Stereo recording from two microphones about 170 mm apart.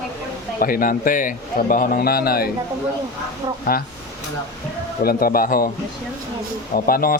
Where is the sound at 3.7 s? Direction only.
65° left (ahead or behind).